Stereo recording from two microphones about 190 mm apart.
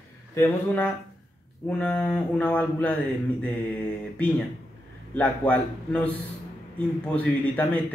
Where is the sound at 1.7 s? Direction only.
5° left (ahead or behind).